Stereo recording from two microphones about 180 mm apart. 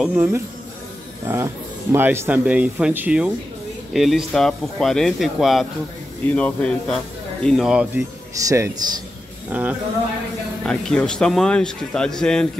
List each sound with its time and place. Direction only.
0.0 s speech: 10° right (ahead or behind)
8.5 s speech: 15° right (ahead or behind)
10.6 s speech: 5° left (ahead or behind)